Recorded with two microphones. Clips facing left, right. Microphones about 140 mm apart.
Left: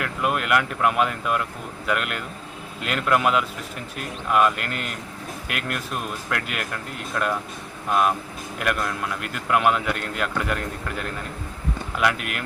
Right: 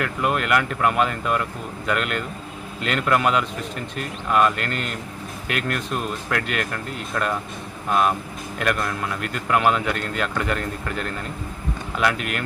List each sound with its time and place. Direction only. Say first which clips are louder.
0.0 s a man's voice: right 2 dB; 5° left (ahead or behind)